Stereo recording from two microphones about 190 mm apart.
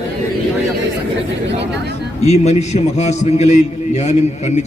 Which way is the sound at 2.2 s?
35° left (ahead or behind).